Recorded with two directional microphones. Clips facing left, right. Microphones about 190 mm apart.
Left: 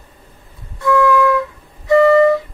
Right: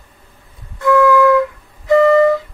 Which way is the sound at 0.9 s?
20° left (ahead or behind).